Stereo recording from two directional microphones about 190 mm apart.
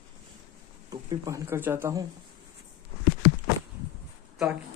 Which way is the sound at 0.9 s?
15° right (ahead or behind).